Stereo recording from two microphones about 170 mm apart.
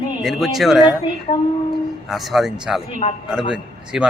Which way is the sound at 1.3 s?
40° left (ahead or behind).